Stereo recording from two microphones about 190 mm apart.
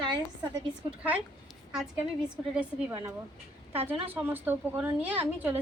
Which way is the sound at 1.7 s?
5° right (ahead or behind).